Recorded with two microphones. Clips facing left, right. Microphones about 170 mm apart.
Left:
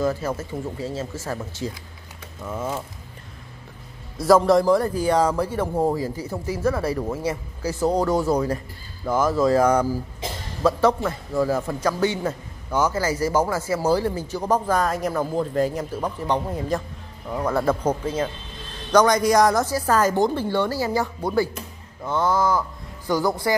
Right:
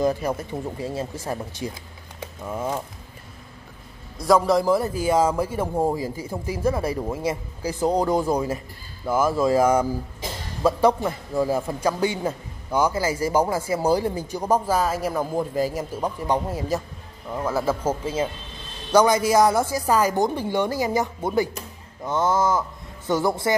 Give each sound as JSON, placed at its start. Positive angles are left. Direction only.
{"t": 0.0, "sound": "a man's voice", "side_deg": -15}
{"t": 4.2, "sound": "a man's voice", "side_deg": 0}